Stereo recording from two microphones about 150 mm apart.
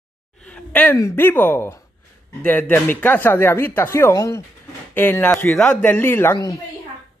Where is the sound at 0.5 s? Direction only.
10° left (ahead or behind).